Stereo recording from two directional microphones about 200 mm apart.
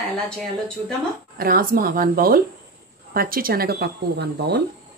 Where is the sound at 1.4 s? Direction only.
45° right (ahead or behind).